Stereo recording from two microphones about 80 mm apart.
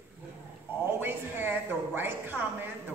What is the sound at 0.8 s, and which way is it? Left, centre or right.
A woman's voice, right.